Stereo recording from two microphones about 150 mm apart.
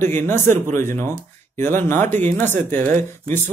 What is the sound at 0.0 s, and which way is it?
Speech, 15° left (ahead or behind).